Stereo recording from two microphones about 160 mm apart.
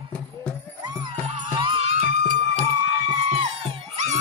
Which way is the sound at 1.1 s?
40° right (ahead or behind).